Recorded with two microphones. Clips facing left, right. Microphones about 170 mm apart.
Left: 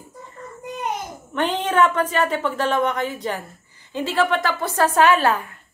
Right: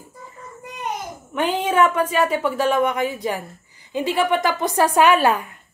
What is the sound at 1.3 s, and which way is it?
A woman's voice, 10° right (ahead or behind).